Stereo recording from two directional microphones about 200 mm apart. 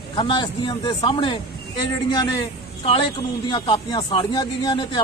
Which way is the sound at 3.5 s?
25° left (ahead or behind).